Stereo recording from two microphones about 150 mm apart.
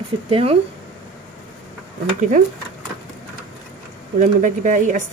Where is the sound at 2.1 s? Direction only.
55° right (ahead or behind).